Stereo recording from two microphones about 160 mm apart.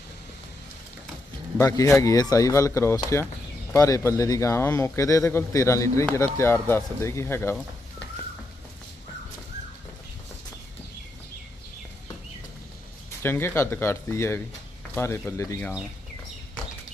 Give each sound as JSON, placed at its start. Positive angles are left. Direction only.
{"t": 1.5, "sound": "speech", "side_deg": 20}
{"t": 13.1, "sound": "speech", "side_deg": 15}